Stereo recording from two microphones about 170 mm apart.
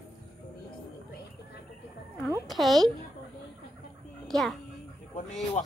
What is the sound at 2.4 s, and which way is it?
Speech, centre (ahead or behind).